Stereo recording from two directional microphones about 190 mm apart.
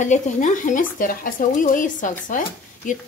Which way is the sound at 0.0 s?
40° left (ahead or behind).